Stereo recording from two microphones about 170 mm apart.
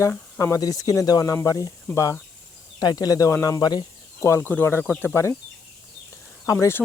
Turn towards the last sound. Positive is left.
turn(degrees=15)  # may be behind; listen again after turning